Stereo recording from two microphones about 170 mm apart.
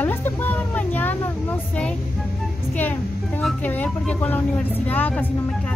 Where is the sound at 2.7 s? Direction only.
10° left (ahead or behind).